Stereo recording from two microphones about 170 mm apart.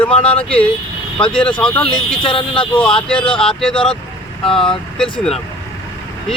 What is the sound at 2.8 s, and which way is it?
Speech, 5° left (ahead or behind).